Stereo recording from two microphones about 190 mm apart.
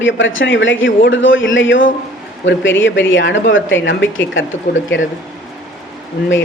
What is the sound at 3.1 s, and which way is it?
A man's voice, 75° left (ahead or behind).